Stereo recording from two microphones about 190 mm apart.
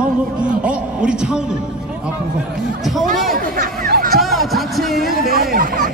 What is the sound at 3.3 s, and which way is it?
Music, 45° right (ahead or behind).